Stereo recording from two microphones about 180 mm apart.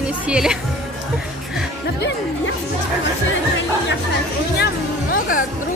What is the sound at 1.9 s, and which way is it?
Music, 75° left (ahead or behind).